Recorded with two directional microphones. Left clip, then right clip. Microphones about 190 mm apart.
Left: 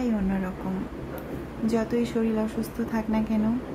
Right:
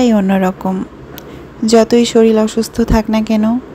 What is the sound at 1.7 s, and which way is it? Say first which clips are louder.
A woman's voice: right 18 dB; 40° right (ahead or behind).